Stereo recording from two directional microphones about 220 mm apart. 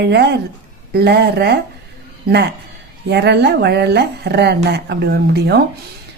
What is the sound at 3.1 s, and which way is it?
Speech, 50° right (ahead or behind).